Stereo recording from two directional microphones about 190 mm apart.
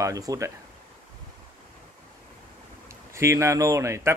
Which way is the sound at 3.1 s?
15° right (ahead or behind).